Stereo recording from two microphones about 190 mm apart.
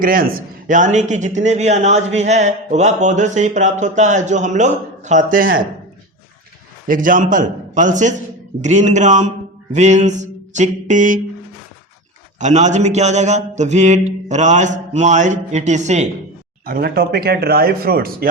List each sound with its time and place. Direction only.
0.0 s a man's voice: 50° right (ahead or behind)
6.8 s a man's voice: 45° right (ahead or behind)
12.4 s a man's voice: 40° right (ahead or behind)
16.6 s speech: 50° right (ahead or behind)